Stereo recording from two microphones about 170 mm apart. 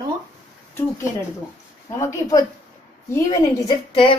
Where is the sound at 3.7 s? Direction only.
30° left (ahead or behind).